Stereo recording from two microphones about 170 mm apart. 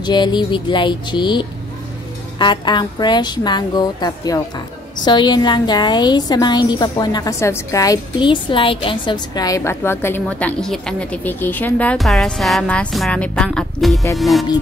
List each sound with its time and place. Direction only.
0.0 s a woman's voice: 25° left (ahead or behind)
10.2 s a woman's voice: centre (ahead or behind)